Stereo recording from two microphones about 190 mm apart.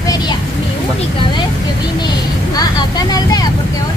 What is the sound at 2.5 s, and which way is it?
Speech, 20° left (ahead or behind).